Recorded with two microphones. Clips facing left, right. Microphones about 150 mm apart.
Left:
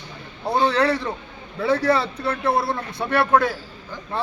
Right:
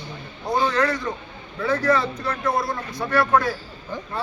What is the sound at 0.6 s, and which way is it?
Speech, 30° left (ahead or behind).